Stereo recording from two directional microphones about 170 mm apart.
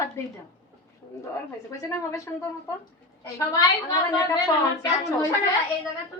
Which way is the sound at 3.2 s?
20° left (ahead or behind).